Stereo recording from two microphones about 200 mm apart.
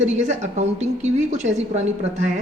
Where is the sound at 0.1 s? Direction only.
35° right (ahead or behind).